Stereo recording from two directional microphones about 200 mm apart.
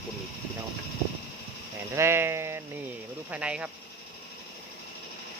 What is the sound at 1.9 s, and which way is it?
Speech, 10° right (ahead or behind).